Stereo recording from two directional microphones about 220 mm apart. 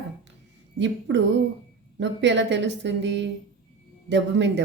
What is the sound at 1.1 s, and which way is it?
Speech, 50° right (ahead or behind).